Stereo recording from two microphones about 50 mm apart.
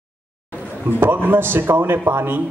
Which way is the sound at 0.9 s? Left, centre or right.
Right.